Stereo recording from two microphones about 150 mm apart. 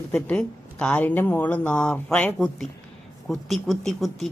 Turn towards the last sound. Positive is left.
turn(degrees=0)  # may be behind; listen again after turning